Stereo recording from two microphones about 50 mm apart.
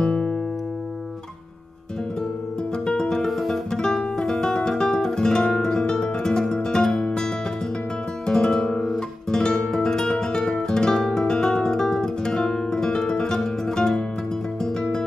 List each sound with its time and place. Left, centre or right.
0.1 s music: centre
2.9 s music: centre
3.3 s music: centre
8.3 s guitar: centre
9.3 s music: centre
10.5 s guitar: centre
14.6 s music: centre